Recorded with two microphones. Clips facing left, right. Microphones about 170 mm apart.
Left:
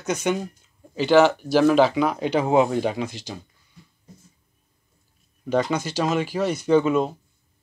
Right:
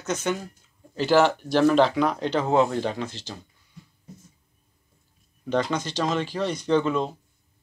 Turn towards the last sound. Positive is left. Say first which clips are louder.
# left 4 dB
turn(degrees=10)  # may be behind; listen again after turning